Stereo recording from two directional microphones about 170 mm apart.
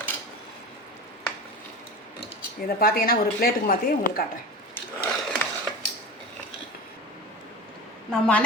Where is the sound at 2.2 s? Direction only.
60° left (ahead or behind).